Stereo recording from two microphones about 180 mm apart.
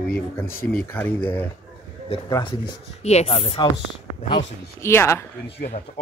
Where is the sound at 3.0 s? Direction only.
35° left (ahead or behind).